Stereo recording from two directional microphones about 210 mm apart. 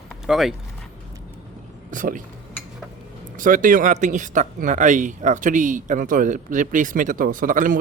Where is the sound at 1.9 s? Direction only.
40° right (ahead or behind).